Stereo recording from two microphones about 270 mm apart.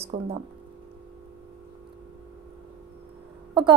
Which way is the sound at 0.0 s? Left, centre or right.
Right.